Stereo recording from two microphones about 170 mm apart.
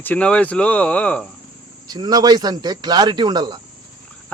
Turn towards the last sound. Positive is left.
turn(degrees=-25)  # may be behind; listen again after turning